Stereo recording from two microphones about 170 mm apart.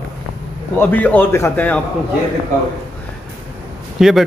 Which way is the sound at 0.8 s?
10° left (ahead or behind).